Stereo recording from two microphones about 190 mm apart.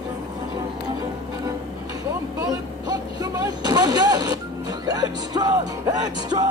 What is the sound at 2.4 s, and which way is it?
Vehicle, 20° right (ahead or behind).